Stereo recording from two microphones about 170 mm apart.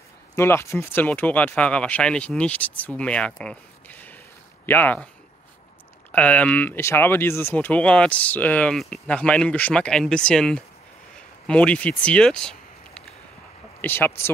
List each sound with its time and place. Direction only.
0.4 s speech: 15° left (ahead or behind)
6.1 s speech: 10° left (ahead or behind)
11.1 s a sound: 5° left (ahead or behind)
13.7 s speech: 10° left (ahead or behind)